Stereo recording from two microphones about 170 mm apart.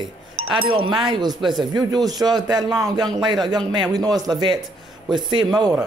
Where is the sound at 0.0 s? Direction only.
30° right (ahead or behind).